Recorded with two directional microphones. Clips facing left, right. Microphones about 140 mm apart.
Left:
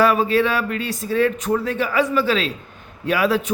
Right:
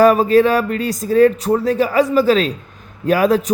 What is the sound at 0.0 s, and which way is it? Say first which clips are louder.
A man's voice: right 6 dB; 40° right (ahead or behind).